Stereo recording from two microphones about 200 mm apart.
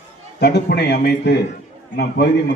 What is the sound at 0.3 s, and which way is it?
A man's voice, 55° left (ahead or behind).